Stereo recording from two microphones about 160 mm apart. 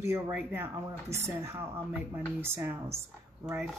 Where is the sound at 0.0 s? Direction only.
10° right (ahead or behind).